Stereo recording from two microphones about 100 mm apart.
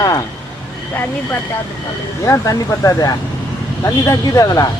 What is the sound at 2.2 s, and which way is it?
Speech, 35° left (ahead or behind).